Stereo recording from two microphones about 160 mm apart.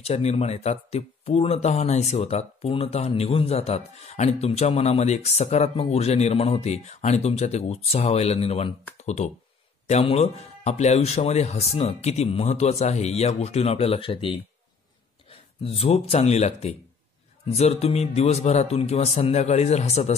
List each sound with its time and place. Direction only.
0.0 s speech: 40° left (ahead or behind)
15.6 s speech: 35° left (ahead or behind)